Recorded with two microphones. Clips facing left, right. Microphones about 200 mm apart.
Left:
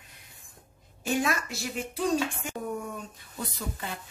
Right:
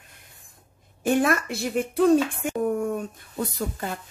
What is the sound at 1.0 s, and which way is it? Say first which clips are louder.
Speech: right 7 dB; 55° right (ahead or behind).